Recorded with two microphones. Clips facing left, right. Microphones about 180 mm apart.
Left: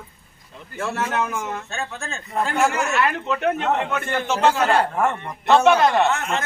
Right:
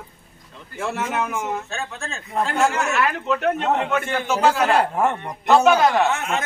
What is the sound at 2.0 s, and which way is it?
A man's voice, centre (ahead or behind).